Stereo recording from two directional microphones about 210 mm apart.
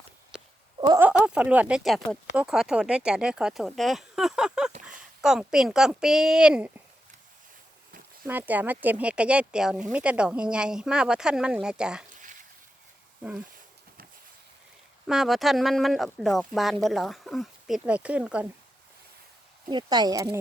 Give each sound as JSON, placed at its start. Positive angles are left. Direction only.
{"t": 0.8, "sound": "a sound", "side_deg": -20}
{"t": 1.0, "sound": "speech", "side_deg": -5}
{"t": 8.3, "sound": "speech", "side_deg": -10}
{"t": 15.0, "sound": "speech", "side_deg": 0}
{"t": 19.6, "sound": "speech", "side_deg": -20}